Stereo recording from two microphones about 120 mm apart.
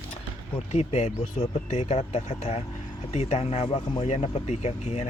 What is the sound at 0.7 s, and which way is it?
Speech, 70° left (ahead or behind).